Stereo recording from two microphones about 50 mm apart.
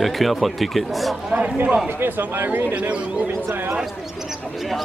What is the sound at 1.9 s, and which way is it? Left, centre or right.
Speech, right.